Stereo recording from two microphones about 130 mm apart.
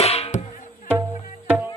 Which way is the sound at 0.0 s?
50° left (ahead or behind).